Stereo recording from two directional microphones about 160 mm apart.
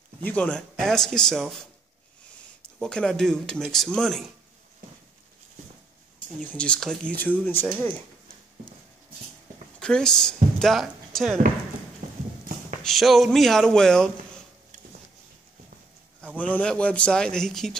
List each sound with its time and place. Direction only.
0.2 s speech: 10° left (ahead or behind)
6.4 s speech: 5° left (ahead or behind)
9.8 s speech: 5° left (ahead or behind)
12.0 s clip-clop: 50° right (ahead or behind)
12.8 s speech: centre (ahead or behind)
16.3 s speech: 10° left (ahead or behind)